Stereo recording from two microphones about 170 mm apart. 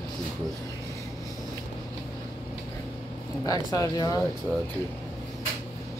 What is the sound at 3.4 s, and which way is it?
Speech, 20° left (ahead or behind).